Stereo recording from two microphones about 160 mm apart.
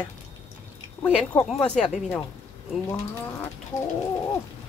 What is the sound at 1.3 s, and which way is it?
Speech, 5° left (ahead or behind).